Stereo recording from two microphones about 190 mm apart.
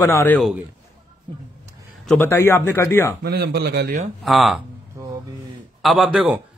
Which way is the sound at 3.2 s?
55° right (ahead or behind).